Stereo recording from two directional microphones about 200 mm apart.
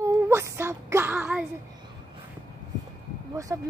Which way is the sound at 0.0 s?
15° right (ahead or behind).